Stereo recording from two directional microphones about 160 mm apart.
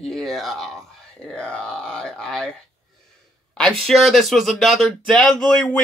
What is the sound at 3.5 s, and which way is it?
Speech, centre (ahead or behind).